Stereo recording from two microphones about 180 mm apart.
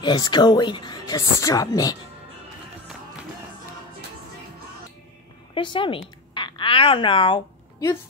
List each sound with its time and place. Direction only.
0.0 s speech: 25° left (ahead or behind)
5.5 s a woman's voice: 25° left (ahead or behind)